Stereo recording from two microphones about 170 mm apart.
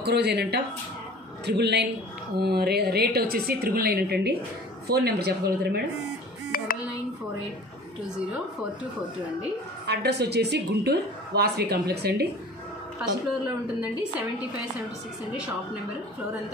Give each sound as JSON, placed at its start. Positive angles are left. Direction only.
{"t": 0.0, "sound": "a man's voice", "side_deg": -75}
{"t": 2.4, "sound": "speech", "side_deg": -70}
{"t": 6.5, "sound": "a sound", "side_deg": 55}
{"t": 9.8, "sound": "speech", "side_deg": -75}